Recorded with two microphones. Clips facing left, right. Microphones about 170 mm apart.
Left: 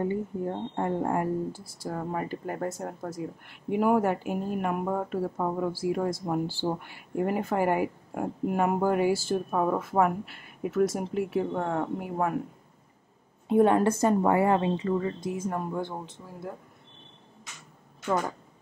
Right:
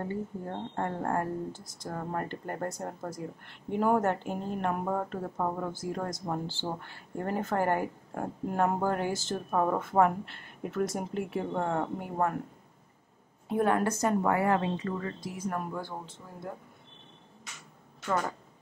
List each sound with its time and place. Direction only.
0.0 s speech: 15° left (ahead or behind)
13.5 s a woman's voice: 20° left (ahead or behind)